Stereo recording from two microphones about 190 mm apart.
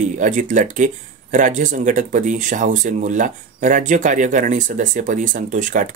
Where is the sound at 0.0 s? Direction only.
40° right (ahead or behind).